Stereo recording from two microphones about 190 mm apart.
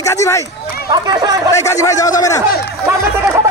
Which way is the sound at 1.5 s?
15° left (ahead or behind).